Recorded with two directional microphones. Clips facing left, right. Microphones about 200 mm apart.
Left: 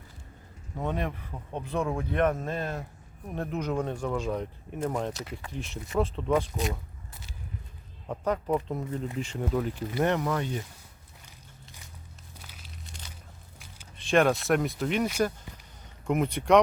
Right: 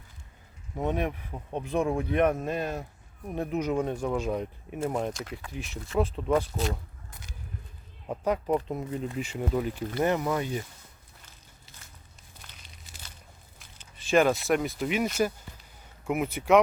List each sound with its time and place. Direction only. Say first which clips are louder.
0.9 s speech: right 3 dB; 15° right (ahead or behind)
5.1 s speech: even; 5° left (ahead or behind)
8.0 s speech: right 1 dB; 10° right (ahead or behind)
11.3 s a sound: left 4 dB; 15° left (ahead or behind)
12.4 s crumpling: left 3 dB; 5° left (ahead or behind)
13.9 s speech: even; 5° right (ahead or behind)
16.0 s speech: left 1 dB; 5° right (ahead or behind)